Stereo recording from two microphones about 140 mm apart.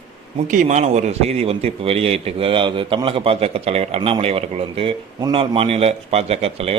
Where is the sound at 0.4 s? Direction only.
65° right (ahead or behind).